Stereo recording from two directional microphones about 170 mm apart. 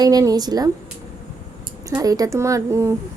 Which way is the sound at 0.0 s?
20° right (ahead or behind).